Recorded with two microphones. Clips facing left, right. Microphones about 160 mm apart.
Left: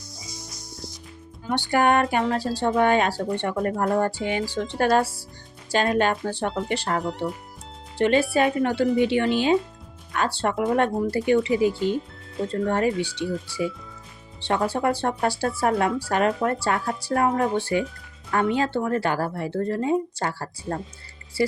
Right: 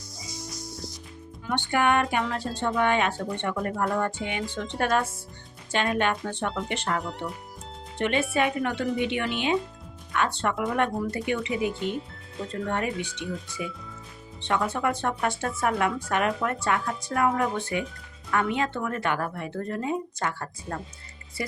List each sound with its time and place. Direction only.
1.5 s speech: 35° left (ahead or behind)
7.0 s speech: centre (ahead or behind)
7.9 s speech: 35° left (ahead or behind)